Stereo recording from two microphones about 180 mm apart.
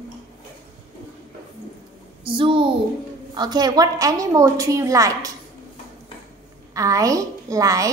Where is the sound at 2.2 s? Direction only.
30° right (ahead or behind).